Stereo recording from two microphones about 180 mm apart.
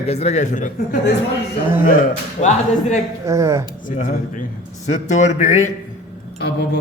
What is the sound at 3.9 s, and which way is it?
A man's voice, 45° left (ahead or behind).